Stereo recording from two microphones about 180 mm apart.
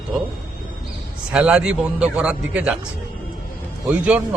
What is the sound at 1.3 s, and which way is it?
A man's voice, 5° right (ahead or behind).